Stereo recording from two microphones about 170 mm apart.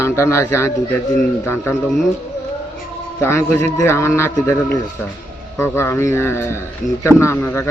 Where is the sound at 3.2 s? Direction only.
15° left (ahead or behind).